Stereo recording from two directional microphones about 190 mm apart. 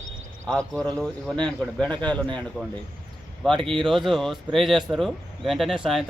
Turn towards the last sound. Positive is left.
turn(degrees=0)  # may be behind; listen again after turning